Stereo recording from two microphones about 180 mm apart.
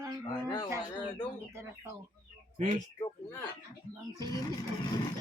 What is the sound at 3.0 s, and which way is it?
Speech, 15° left (ahead or behind).